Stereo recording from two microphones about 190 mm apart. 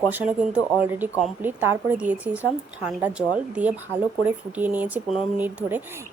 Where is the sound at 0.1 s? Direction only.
10° right (ahead or behind).